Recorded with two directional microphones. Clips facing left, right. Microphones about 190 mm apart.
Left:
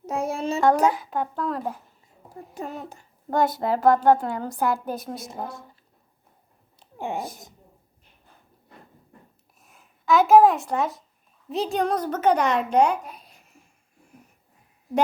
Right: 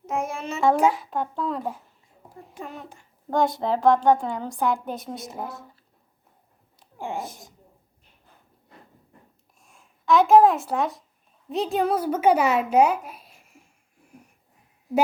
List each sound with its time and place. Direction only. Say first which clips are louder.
0.0 s a sound: left 2 dB; 35° left (ahead or behind)
0.6 s a woman's voice: right 1 dB; centre (ahead or behind)
2.6 s speech: left 4 dB; 40° left (ahead or behind)
3.2 s a woman's voice: even; 5° left (ahead or behind)
6.7 s a sound: left 2 dB; 20° left (ahead or behind)
7.2 s a woman's voice: left 1 dB; centre (ahead or behind)
9.6 s a woman's voice: even; centre (ahead or behind)